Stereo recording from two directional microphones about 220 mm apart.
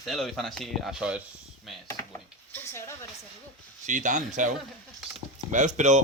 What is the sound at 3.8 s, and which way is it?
Speech, 35° right (ahead or behind).